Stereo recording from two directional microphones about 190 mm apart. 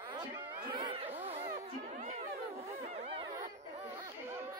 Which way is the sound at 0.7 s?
25° right (ahead or behind).